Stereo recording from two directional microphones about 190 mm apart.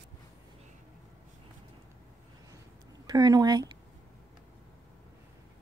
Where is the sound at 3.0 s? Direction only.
20° right (ahead or behind).